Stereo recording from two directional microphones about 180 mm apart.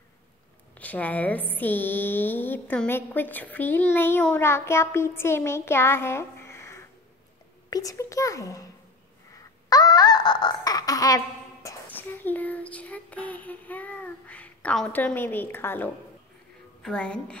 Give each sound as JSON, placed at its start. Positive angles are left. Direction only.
{"t": 0.7, "sound": "a woman's voice", "side_deg": 10}
{"t": 9.7, "sound": "a sound", "side_deg": 20}
{"t": 16.8, "sound": "a woman's voice", "side_deg": 5}